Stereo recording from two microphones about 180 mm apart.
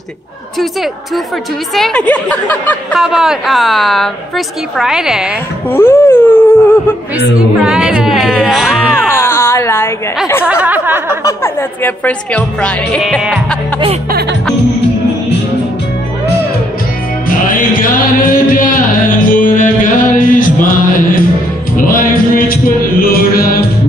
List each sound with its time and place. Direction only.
1.7 s speech: 5° left (ahead or behind)
3.0 s speech: centre (ahead or behind)
5.7 s laughter: 15° left (ahead or behind)
7.6 s speech: 5° right (ahead or behind)
8.9 s a sound: 15° left (ahead or behind)
10.4 s speech: 10° right (ahead or behind)
11.2 s speech: 10° left (ahead or behind)
17.3 s music: 50° left (ahead or behind)